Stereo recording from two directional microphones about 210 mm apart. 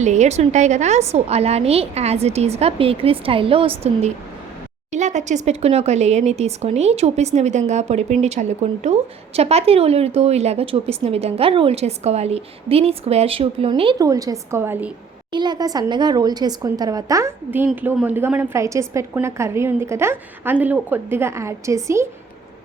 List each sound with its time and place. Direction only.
0.0 s a woman's voice: 35° right (ahead or behind); by 14.9 s 10° right (ahead or behind)
15.3 s a woman's voice: 20° right (ahead or behind)